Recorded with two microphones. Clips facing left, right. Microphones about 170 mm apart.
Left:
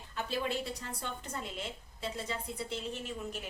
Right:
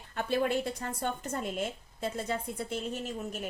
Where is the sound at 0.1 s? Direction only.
55° right (ahead or behind).